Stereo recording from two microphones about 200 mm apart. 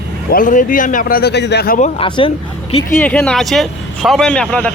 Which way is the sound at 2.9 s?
5° left (ahead or behind).